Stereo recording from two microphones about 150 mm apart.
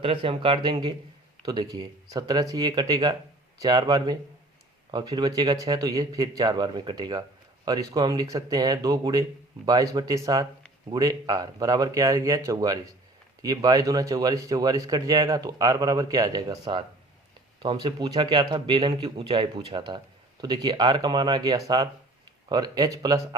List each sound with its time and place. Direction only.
0.0 s a man's voice: 35° right (ahead or behind)